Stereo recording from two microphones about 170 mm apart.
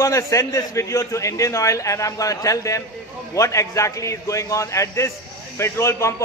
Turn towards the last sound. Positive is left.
turn(degrees=15)  # may be behind; listen again after turning